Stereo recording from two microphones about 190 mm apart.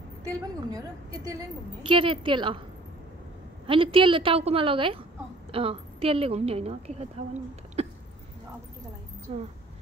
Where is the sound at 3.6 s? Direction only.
25° right (ahead or behind).